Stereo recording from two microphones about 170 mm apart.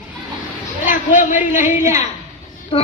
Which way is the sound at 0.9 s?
50° left (ahead or behind).